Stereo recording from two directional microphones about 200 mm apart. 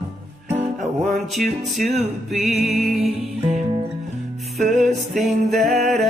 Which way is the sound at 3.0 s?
35° right (ahead or behind).